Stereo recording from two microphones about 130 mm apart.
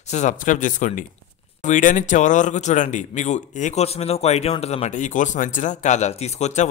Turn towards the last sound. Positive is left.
turn(degrees=65)  # may be behind; listen again after turning